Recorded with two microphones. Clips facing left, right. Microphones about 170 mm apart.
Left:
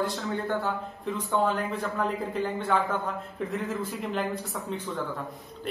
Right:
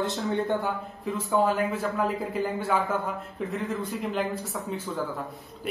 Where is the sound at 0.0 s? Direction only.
25° right (ahead or behind).